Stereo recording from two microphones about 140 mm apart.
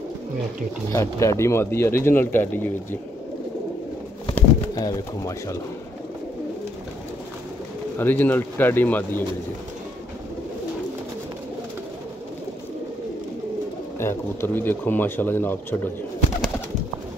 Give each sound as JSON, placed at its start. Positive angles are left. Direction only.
{"t": 0.9, "sound": "speech", "side_deg": 20}
{"t": 4.7, "sound": "speech", "side_deg": 25}
{"t": 8.0, "sound": "speech", "side_deg": 15}
{"t": 13.9, "sound": "speech", "side_deg": 15}